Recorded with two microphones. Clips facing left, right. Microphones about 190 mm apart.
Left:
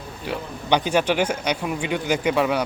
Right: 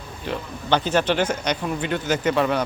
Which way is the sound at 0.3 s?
10° left (ahead or behind).